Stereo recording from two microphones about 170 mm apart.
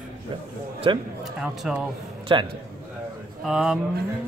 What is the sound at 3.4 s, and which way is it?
Speech, centre (ahead or behind).